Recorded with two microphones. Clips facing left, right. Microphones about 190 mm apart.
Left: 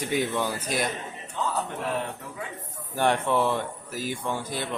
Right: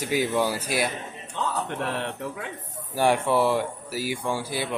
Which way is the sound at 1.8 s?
70° right (ahead or behind).